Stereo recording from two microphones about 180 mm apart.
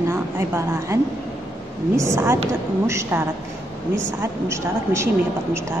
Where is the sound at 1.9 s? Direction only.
15° right (ahead or behind).